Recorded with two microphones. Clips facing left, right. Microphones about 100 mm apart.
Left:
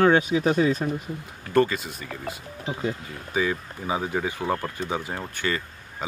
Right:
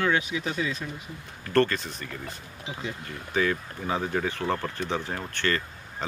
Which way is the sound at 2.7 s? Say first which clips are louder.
Left 6 dB; 45° left (ahead or behind).